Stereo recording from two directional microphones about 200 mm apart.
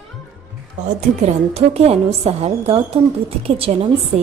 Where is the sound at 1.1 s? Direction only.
35° right (ahead or behind).